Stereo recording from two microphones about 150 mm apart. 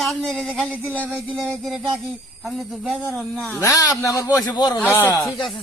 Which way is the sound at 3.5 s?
20° left (ahead or behind).